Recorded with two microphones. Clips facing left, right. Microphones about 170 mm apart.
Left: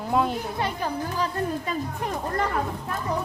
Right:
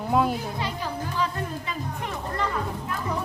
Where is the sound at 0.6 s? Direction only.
55° left (ahead or behind).